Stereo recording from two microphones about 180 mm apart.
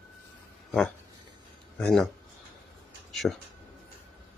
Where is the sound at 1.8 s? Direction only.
5° left (ahead or behind).